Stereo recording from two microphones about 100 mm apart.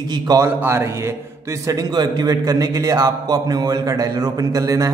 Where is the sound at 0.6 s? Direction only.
25° right (ahead or behind).